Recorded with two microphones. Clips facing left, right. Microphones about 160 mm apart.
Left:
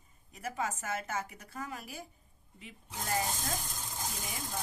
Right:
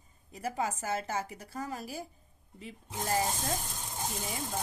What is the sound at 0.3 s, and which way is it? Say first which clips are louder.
A woman's voice: right 3 dB; 35° right (ahead or behind).